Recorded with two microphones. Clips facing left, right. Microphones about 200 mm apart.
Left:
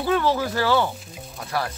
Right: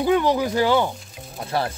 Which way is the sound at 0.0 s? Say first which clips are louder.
Right 3 dB; 15° right (ahead or behind).